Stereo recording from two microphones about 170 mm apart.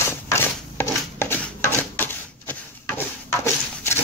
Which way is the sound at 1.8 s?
10° left (ahead or behind).